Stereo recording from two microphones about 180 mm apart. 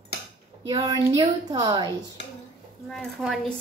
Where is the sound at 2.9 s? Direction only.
Centre (ahead or behind).